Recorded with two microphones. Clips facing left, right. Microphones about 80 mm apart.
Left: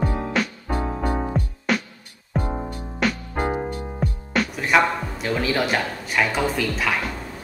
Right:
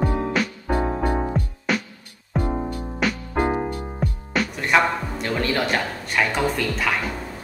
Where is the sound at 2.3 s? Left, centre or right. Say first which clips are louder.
Right 2 dB; left.